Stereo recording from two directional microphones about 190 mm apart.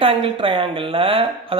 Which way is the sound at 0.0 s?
30° right (ahead or behind).